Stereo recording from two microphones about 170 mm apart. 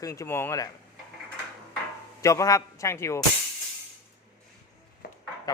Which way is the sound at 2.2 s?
20° left (ahead or behind).